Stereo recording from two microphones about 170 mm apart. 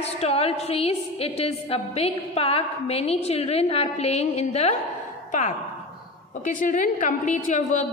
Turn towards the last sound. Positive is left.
turn(degrees=45)  # may be behind; listen again after turning